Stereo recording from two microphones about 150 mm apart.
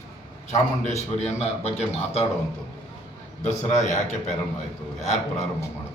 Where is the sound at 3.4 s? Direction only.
50° left (ahead or behind).